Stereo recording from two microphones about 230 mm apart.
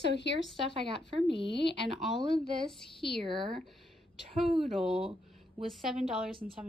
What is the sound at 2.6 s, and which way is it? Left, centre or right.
A woman's voice, centre.